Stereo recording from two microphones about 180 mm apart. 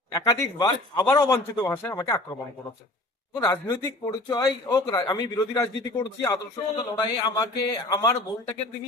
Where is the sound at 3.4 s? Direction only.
20° left (ahead or behind).